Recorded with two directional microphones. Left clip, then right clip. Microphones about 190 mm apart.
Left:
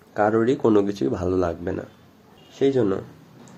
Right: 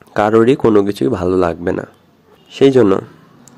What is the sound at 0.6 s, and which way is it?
Speech, 25° right (ahead or behind).